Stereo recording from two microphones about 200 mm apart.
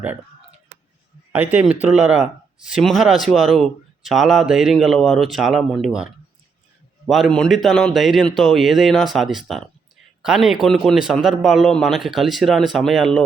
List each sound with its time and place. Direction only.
1.3 s speech: 5° right (ahead or behind)
7.1 s speech: centre (ahead or behind)